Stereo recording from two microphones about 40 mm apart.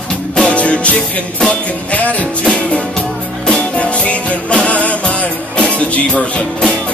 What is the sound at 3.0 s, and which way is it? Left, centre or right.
Music, left.